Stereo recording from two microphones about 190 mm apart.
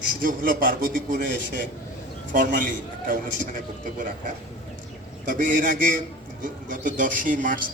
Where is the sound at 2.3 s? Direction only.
45° right (ahead or behind).